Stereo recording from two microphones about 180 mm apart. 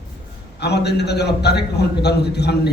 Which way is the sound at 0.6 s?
65° left (ahead or behind).